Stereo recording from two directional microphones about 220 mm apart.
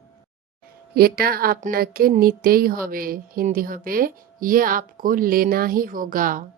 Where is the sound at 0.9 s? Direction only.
45° right (ahead or behind).